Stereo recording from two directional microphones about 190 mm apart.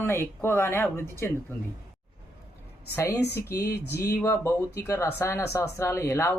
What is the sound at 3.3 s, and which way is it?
Speech, 15° left (ahead or behind).